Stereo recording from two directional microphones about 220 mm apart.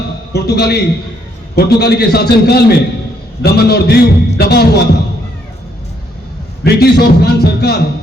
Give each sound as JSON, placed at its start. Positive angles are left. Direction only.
{"t": 0.3, "sound": "a man's voice", "side_deg": 45}
{"t": 6.7, "sound": "a man's voice", "side_deg": 45}